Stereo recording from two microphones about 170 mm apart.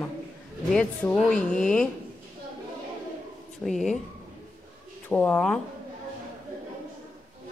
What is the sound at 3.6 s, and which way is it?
Speech, centre (ahead or behind).